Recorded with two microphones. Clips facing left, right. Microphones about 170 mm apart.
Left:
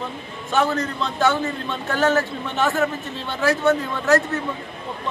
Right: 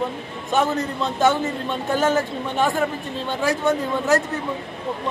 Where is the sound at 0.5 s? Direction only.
15° right (ahead or behind).